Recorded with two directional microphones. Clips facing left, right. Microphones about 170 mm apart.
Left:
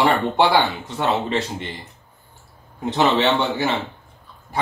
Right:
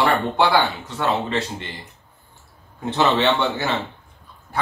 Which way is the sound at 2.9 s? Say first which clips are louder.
Left 1 dB; 15° left (ahead or behind).